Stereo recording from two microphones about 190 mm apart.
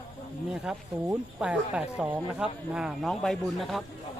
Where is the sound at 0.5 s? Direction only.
5° right (ahead or behind).